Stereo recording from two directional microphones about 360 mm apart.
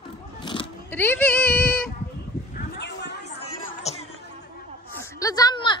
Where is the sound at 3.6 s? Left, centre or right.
Centre.